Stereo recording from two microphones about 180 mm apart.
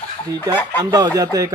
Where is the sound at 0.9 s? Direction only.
20° right (ahead or behind).